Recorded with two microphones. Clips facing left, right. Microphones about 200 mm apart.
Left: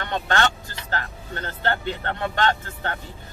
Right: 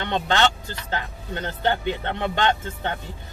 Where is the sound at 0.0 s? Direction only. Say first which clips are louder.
Right 2 dB; 20° right (ahead or behind).